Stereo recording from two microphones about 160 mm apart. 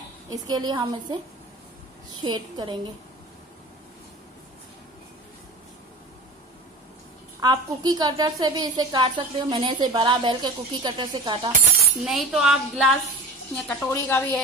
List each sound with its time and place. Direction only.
0.3 s a woman's voice: 25° right (ahead or behind)
2.2 s a woman's voice: 30° right (ahead or behind)
7.3 s a woman's voice: 25° right (ahead or behind)
12.0 s speech: centre (ahead or behind)
13.7 s a woman's voice: 10° left (ahead or behind)